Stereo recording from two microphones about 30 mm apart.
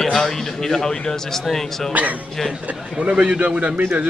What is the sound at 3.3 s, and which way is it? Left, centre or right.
Speech, right.